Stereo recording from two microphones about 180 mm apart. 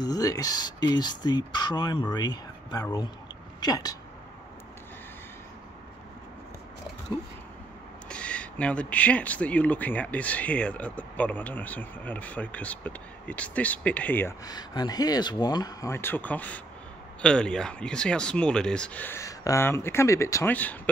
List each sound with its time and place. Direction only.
0.0 s speech: 20° left (ahead or behind)
8.1 s speech: 5° left (ahead or behind)